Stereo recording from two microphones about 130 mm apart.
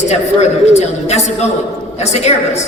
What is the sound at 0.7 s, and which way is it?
A woman's voice, 55° left (ahead or behind).